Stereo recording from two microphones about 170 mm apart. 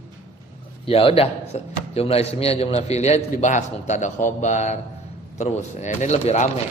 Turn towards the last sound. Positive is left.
turn(degrees=40)  # may be behind; listen again after turning